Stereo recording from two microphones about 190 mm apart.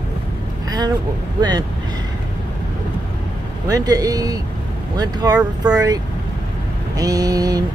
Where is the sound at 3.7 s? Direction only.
20° right (ahead or behind).